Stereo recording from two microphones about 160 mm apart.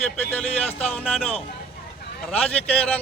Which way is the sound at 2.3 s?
10° left (ahead or behind).